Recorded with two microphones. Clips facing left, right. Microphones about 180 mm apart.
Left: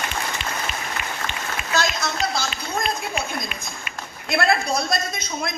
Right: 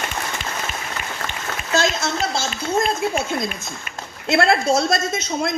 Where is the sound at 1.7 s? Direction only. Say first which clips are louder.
Right 4 dB; 25° right (ahead or behind).